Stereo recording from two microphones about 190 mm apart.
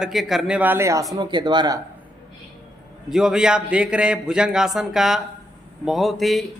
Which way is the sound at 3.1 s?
5° right (ahead or behind).